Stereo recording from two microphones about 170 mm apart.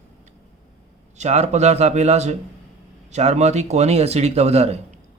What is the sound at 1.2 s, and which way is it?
Speech, 40° right (ahead or behind).